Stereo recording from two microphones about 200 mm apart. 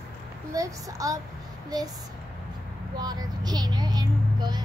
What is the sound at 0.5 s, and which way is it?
Speech, 15° right (ahead or behind).